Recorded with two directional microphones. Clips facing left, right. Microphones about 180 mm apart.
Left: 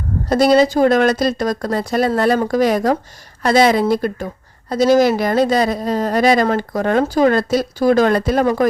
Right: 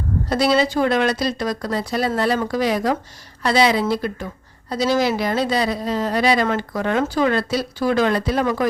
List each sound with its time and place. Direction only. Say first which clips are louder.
0.3 s a woman's voice: left 6 dB; 45° left (ahead or behind)